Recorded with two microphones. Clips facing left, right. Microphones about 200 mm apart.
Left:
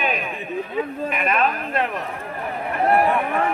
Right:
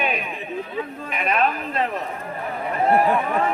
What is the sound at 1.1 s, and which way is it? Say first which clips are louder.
Speech: left 2 dB; 55° left (ahead or behind).